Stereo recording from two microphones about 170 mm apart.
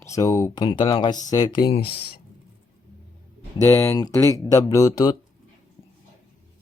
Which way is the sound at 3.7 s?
15° left (ahead or behind).